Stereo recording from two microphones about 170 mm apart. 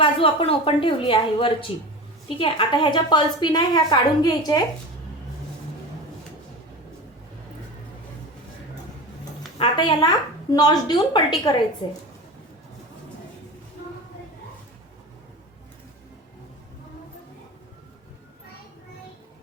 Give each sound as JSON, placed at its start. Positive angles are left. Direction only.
{"t": 0.0, "sound": "a woman's voice", "side_deg": 35}
{"t": 9.6, "sound": "a woman's voice", "side_deg": 25}